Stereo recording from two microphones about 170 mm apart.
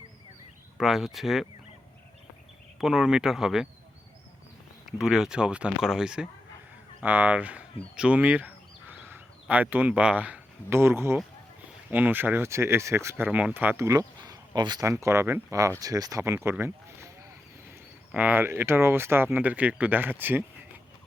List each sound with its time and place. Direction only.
0.8 s speech: centre (ahead or behind)
2.7 s speech: centre (ahead or behind)
4.9 s speech: centre (ahead or behind)